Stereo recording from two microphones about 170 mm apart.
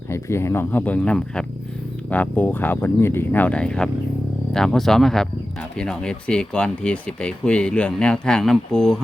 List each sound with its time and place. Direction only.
0.1 s speech: 15° left (ahead or behind)